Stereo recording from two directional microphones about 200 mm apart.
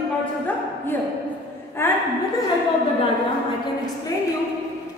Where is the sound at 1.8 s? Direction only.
10° left (ahead or behind).